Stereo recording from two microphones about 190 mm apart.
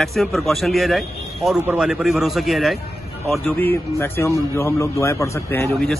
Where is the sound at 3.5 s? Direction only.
10° left (ahead or behind).